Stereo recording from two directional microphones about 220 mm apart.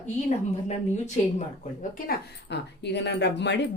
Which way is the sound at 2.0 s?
50° left (ahead or behind).